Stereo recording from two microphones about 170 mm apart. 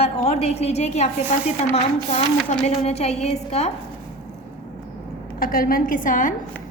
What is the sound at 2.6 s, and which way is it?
A woman's voice, 40° left (ahead or behind).